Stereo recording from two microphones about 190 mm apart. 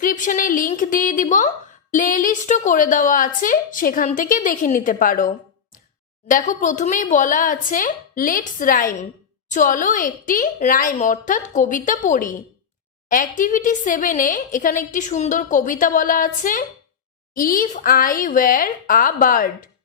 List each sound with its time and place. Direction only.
0.0 s a woman's voice: 45° left (ahead or behind)